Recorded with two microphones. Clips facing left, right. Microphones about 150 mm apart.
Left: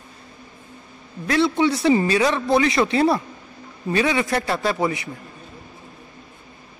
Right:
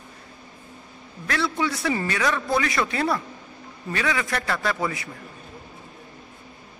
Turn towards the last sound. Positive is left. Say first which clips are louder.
# left 4 dB
turn(degrees=25)  # may be behind; listen again after turning